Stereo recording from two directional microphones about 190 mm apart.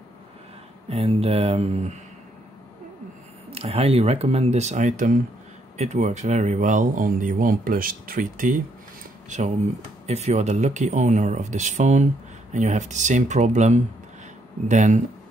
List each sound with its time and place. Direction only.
0.8 s speech: 30° right (ahead or behind)
3.4 s speech: 35° right (ahead or behind)